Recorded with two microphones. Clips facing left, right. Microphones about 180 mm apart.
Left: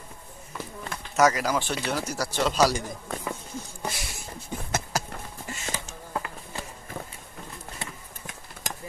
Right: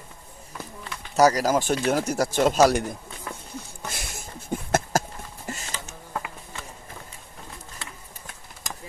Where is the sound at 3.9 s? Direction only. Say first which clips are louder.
Even; 50° right (ahead or behind).